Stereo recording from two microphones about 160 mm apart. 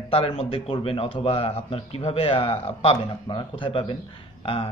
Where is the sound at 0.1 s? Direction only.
40° left (ahead or behind).